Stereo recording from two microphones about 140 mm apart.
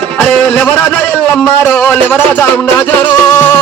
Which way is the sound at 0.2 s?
10° left (ahead or behind).